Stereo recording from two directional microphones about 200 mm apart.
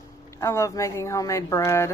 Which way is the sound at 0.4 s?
15° left (ahead or behind).